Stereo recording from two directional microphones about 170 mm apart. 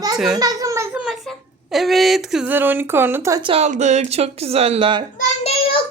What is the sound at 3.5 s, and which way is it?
A woman's voice, 40° right (ahead or behind).